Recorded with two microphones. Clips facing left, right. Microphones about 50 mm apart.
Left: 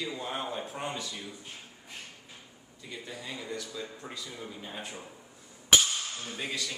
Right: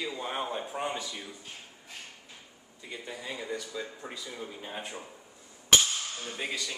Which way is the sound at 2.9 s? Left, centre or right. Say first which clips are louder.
Right 2 dB; centre.